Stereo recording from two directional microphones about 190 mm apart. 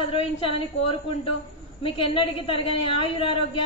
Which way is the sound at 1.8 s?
30° left (ahead or behind).